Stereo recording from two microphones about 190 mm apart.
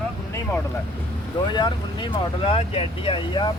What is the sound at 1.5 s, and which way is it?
Speech, 25° left (ahead or behind).